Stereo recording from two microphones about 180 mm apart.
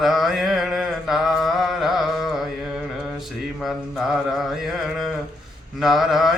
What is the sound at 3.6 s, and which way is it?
Mantra, centre (ahead or behind).